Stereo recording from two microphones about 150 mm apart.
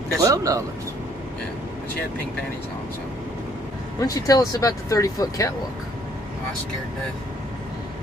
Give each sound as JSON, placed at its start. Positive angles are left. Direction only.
{"t": 0.2, "sound": "a man's voice", "side_deg": -20}
{"t": 4.0, "sound": "speech", "side_deg": 25}